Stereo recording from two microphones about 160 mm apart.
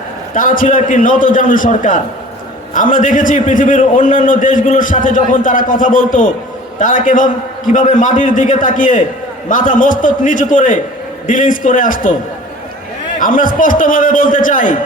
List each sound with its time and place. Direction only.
0.3 s a man's voice: 55° left (ahead or behind)
13.1 s a man's voice: 55° left (ahead or behind)